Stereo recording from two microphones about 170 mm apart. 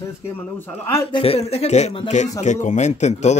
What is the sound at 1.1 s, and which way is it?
Speech, 35° left (ahead or behind).